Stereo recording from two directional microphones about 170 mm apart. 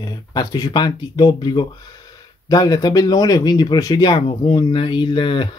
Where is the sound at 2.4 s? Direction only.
20° left (ahead or behind).